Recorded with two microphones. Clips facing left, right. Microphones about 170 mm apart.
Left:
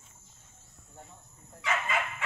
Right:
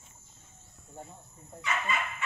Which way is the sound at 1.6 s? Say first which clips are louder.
Left 1 dB; 90° left.